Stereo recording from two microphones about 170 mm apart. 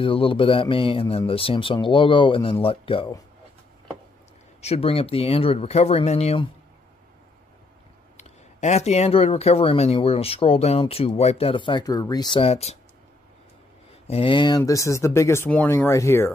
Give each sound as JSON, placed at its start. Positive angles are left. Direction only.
{"t": 0.0, "sound": "speech", "side_deg": 30}
{"t": 4.6, "sound": "speech", "side_deg": 40}
{"t": 8.2, "sound": "speech", "side_deg": 45}
{"t": 14.0, "sound": "speech", "side_deg": 35}